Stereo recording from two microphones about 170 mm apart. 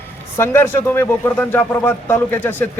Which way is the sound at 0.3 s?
15° left (ahead or behind).